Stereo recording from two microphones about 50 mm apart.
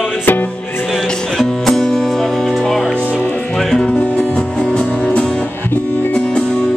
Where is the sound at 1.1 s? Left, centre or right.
Centre.